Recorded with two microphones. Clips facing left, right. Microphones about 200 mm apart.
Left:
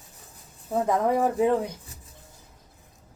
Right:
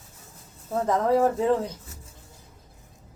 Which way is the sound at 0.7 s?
15° left (ahead or behind).